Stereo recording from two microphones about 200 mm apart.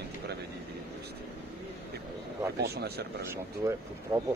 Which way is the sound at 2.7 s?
55° right (ahead or behind).